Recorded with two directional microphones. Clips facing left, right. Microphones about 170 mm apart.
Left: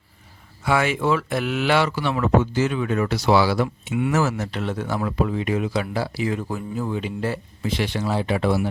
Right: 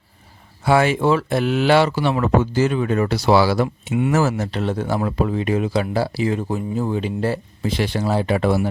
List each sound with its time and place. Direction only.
0.6 s speech: 35° right (ahead or behind)